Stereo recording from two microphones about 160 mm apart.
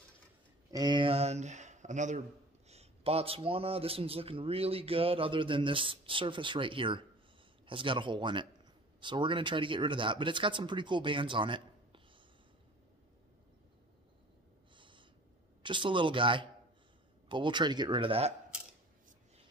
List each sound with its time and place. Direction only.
0.7 s a man's voice: 25° right (ahead or behind)
14.8 s snort: 30° right (ahead or behind)
15.6 s a man's voice: 30° right (ahead or behind)